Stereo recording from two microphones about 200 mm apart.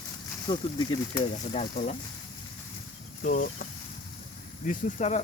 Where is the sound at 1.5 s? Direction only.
35° left (ahead or behind).